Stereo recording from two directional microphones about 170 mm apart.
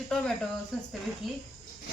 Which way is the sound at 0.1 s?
5° left (ahead or behind).